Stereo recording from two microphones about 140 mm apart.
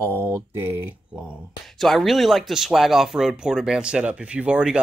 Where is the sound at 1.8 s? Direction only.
Centre (ahead or behind).